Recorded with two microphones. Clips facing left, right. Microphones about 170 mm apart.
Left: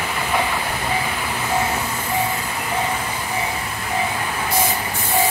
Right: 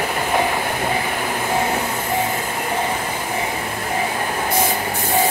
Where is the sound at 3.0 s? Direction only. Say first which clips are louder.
Right 1 dB; 45° right (ahead or behind).